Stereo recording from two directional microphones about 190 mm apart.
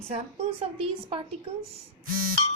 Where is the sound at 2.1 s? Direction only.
50° right (ahead or behind).